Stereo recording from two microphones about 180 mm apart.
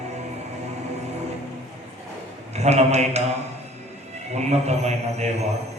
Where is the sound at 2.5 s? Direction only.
40° right (ahead or behind).